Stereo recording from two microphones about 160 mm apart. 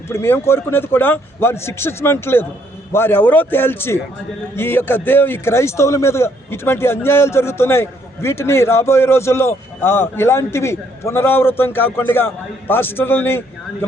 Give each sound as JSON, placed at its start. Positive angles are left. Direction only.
{"t": 0.1, "sound": "speech", "side_deg": 15}